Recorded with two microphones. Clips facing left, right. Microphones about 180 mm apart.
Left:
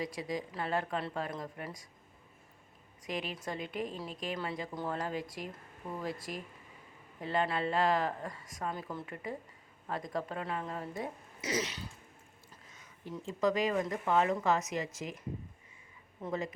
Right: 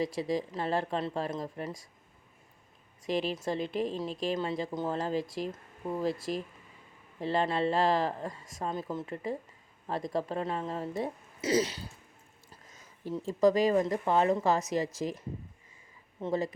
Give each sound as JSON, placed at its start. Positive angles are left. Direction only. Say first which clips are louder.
{"t": 0.0, "sound": "a woman's voice", "louder": "right 6 dB", "side_deg": -30}
{"t": 3.1, "sound": "a woman's voice", "louder": "right 7 dB", "side_deg": -30}
{"t": 13.1, "sound": "speech", "louder": "right 6 dB", "side_deg": -35}
{"t": 16.2, "sound": "speech", "louder": "right 5 dB", "side_deg": -35}